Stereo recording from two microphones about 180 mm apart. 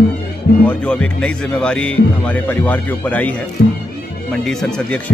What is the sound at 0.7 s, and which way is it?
Speech, 5° left (ahead or behind).